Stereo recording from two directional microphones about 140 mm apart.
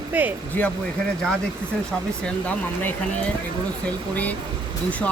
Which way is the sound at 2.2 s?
10° left (ahead or behind).